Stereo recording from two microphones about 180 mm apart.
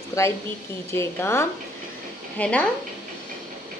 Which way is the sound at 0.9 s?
15° left (ahead or behind).